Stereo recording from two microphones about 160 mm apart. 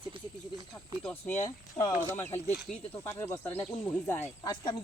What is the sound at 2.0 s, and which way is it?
Speech, 15° left (ahead or behind).